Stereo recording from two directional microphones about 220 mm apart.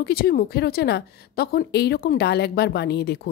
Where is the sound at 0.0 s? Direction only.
45° left (ahead or behind).